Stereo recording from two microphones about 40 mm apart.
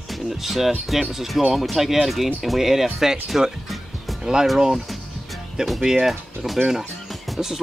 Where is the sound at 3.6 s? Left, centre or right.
Centre.